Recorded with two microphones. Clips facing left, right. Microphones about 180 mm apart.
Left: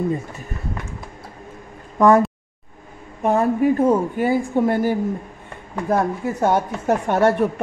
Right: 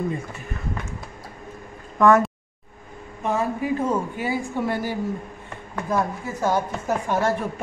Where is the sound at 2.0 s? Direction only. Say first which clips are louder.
Left 3 dB; 35° left (ahead or behind).